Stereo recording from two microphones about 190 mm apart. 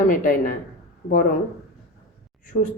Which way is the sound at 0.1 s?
45° left (ahead or behind).